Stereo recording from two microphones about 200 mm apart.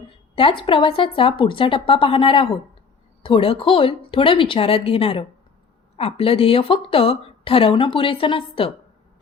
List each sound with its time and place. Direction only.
0.3 s speech: 25° left (ahead or behind)